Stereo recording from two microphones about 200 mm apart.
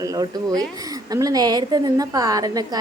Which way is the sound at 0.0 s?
15° right (ahead or behind).